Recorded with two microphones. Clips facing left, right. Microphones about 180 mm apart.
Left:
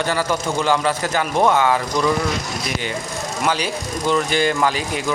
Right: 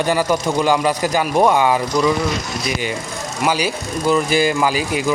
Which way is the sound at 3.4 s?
10° right (ahead or behind).